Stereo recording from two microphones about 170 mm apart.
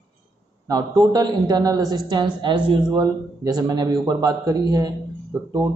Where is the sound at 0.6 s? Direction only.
20° right (ahead or behind).